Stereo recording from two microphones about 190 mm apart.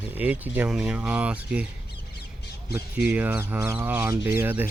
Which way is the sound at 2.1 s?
60° left (ahead or behind).